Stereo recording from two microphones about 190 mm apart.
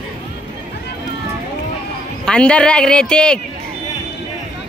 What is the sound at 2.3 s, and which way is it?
Speech, 5° left (ahead or behind).